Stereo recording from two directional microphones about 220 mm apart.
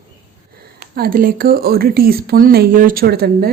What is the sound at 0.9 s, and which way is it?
Speech, 40° right (ahead or behind).